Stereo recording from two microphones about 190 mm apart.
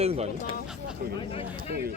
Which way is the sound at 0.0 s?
35° right (ahead or behind).